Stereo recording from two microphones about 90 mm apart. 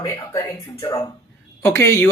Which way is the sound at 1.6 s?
30° left (ahead or behind).